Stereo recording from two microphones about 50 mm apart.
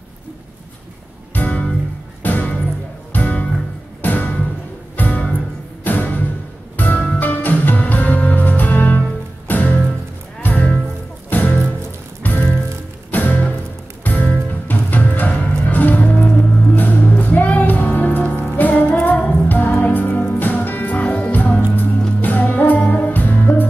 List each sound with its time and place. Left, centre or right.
1.3 s music: left